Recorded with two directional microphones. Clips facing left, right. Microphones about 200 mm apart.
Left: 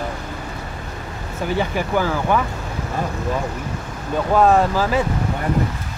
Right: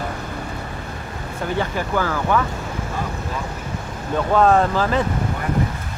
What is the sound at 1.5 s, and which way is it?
Speech, 15° left (ahead or behind).